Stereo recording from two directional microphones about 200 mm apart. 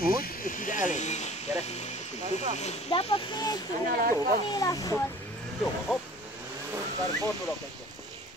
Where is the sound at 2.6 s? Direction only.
30° left (ahead or behind).